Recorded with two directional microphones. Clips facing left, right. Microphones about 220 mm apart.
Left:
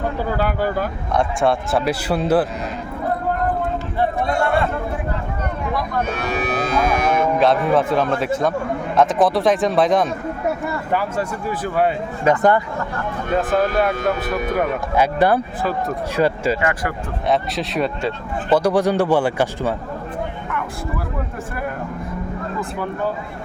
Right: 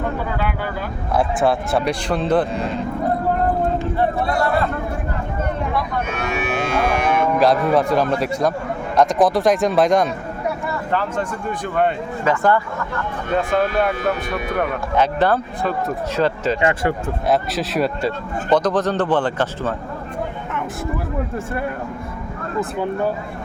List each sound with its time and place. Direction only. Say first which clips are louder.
0.3 s speech: left 4 dB; 40° left (ahead or behind)
1.1 s speech: right 1 dB; 5° right (ahead or behind)
6.1 s moo: left 1 dB; 35° left (ahead or behind)
7.3 s speech: right 1 dB; centre (ahead or behind)
12.2 s speech: left 2 dB; 20° left (ahead or behind)
13.3 s speech: even; centre (ahead or behind)
16.6 s speech: right 3 dB; 25° right (ahead or behind)
17.2 s speech: even; centre (ahead or behind)
18.5 s speech: left 1 dB; 10° left (ahead or behind)